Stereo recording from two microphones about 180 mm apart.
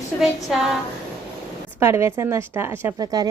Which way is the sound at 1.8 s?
15° right (ahead or behind).